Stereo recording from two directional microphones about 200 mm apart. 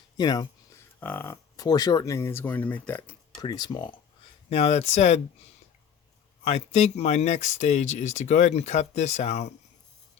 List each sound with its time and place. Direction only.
0.2 s speech: 20° left (ahead or behind)
3.3 s speech: 20° left (ahead or behind)
6.4 s speech: 30° left (ahead or behind)